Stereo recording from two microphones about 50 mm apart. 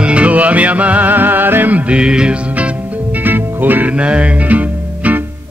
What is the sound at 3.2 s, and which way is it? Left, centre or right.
Music, right.